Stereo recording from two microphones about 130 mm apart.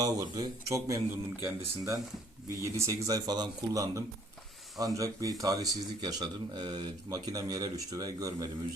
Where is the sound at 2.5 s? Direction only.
25° right (ahead or behind).